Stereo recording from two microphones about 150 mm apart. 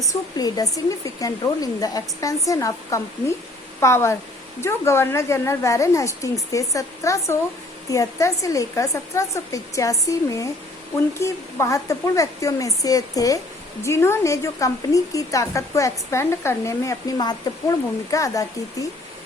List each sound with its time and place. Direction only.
0.1 s a woman's voice: 25° left (ahead or behind)